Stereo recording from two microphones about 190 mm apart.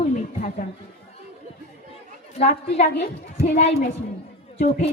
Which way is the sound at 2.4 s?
35° left (ahead or behind).